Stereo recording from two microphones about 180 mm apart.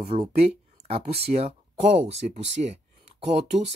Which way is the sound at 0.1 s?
35° right (ahead or behind).